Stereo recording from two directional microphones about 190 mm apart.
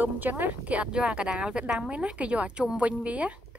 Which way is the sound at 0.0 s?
10° right (ahead or behind).